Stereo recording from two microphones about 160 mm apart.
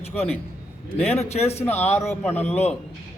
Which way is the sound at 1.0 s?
40° left (ahead or behind).